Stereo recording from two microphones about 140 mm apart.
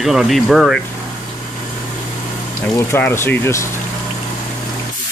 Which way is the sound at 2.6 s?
15° left (ahead or behind).